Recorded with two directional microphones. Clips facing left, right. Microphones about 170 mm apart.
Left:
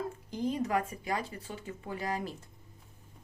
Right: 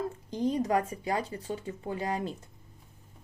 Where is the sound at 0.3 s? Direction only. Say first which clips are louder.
Right 4 dB; 35° right (ahead or behind).